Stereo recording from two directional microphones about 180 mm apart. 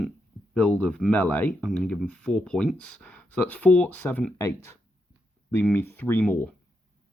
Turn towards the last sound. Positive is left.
turn(degrees=10)  # may be behind; listen again after turning